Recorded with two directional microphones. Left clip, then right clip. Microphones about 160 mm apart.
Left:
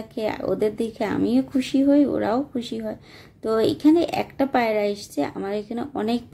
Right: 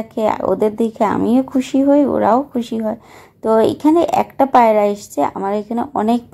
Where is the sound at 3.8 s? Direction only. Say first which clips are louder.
Right 6 dB; 25° left (ahead or behind).